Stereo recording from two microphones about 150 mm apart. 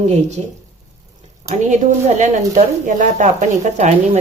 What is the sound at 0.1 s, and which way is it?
Speech, 50° right (ahead or behind).